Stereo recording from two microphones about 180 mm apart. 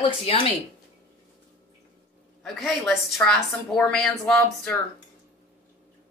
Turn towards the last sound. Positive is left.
turn(degrees=5)  # may be behind; listen again after turning